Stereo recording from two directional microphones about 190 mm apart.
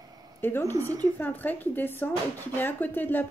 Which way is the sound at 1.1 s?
10° left (ahead or behind).